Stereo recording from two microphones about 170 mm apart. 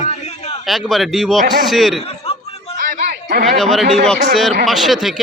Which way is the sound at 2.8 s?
55° right (ahead or behind).